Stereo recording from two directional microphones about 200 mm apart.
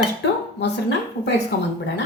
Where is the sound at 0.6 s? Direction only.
60° left (ahead or behind).